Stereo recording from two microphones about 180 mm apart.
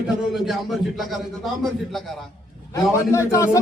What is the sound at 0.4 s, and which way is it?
Speech, centre (ahead or behind).